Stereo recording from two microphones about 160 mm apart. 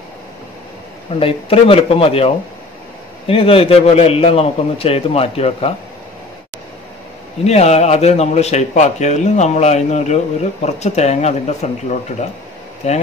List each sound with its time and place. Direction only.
1.2 s a man's voice: 35° left (ahead or behind)
7.4 s a man's voice: 40° left (ahead or behind)